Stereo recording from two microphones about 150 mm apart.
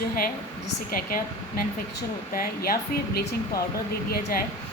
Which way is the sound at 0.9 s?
70° left (ahead or behind).